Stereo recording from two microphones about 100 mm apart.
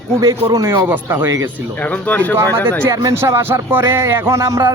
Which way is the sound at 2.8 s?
30° right (ahead or behind).